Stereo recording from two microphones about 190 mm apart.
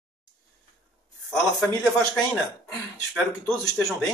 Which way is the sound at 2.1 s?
Centre (ahead or behind).